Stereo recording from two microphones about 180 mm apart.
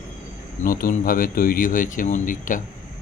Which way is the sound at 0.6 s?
50° left (ahead or behind).